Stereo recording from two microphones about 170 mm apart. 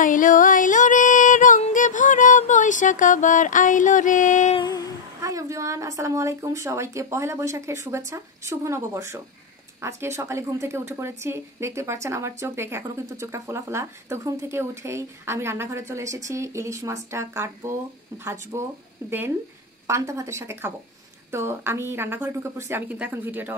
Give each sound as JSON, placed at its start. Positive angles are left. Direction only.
{"t": 0.0, "sound": "music", "side_deg": 50}
{"t": 4.6, "sound": "humming", "side_deg": 25}
{"t": 5.2, "sound": "a woman's voice", "side_deg": -20}